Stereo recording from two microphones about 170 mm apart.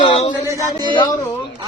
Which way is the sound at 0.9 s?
25° left (ahead or behind).